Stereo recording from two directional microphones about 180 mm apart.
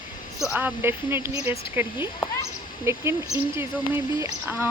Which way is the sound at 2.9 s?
15° right (ahead or behind).